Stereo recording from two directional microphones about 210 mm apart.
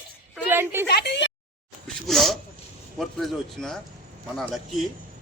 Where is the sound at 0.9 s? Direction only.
55° left (ahead or behind).